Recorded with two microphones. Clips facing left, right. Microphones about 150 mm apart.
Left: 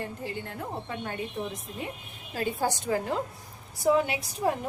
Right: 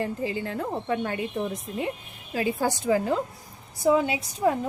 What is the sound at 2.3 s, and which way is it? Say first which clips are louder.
Speech: right 3 dB; 90° right.